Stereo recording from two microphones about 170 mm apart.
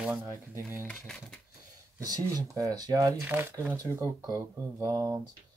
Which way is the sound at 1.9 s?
20° right (ahead or behind).